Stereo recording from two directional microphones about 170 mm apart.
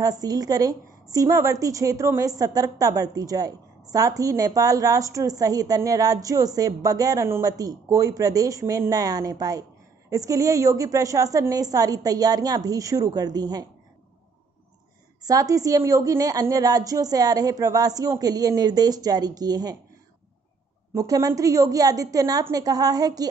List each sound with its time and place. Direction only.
0.0 s a woman's voice: 20° right (ahead or behind)
15.2 s a woman's voice: 20° right (ahead or behind)
20.9 s a woman's voice: 20° right (ahead or behind)